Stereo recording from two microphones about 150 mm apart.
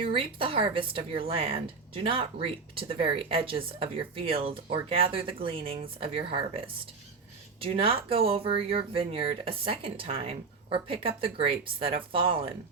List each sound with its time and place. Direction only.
0.0 s speech: 35° right (ahead or behind)